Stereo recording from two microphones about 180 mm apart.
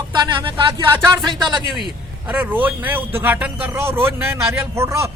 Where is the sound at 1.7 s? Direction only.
5° right (ahead or behind).